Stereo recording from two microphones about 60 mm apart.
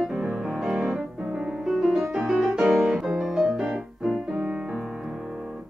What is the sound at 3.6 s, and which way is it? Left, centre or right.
Music, centre.